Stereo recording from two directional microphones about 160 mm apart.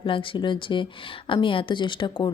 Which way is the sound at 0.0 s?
35° left (ahead or behind).